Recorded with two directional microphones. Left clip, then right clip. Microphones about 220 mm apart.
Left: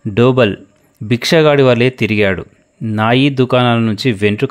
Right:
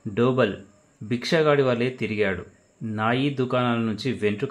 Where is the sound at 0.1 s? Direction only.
45° left (ahead or behind).